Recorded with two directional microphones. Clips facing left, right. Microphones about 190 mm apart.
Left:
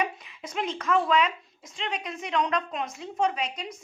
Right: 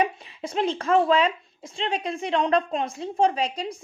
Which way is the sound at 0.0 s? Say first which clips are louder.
Right 5 dB; 30° right (ahead or behind).